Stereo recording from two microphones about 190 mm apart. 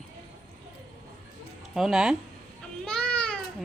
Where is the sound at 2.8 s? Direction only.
5° left (ahead or behind).